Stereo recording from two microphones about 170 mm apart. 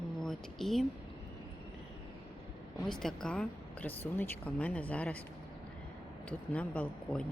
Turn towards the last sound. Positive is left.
turn(degrees=10)  # may be behind; listen again after turning